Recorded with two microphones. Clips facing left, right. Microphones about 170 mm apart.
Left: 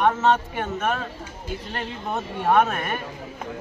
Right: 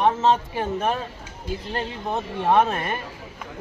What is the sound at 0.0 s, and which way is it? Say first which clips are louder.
Speech: even; 30° right (ahead or behind).